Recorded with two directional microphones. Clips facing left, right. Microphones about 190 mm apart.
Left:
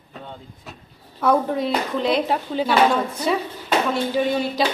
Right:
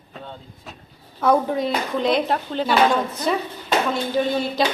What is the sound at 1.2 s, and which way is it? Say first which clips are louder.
Speech: right 1 dB; 5° right (ahead or behind).